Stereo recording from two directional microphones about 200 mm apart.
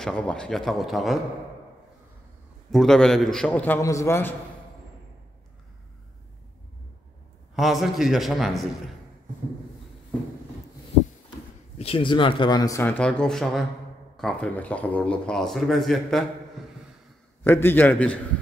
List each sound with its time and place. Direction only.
0.0 s speech: 5° left (ahead or behind)
2.7 s speech: centre (ahead or behind)
7.5 s speech: centre (ahead or behind)
11.8 s speech: 25° left (ahead or behind); by 18.2 s 5° left (ahead or behind)